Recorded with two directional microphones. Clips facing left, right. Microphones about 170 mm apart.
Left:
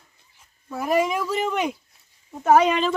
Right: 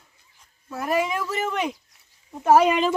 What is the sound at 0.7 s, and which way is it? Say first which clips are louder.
Speech: left 2 dB; centre (ahead or behind).